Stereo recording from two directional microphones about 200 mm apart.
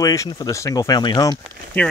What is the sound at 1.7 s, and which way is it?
Speech, 10° left (ahead or behind).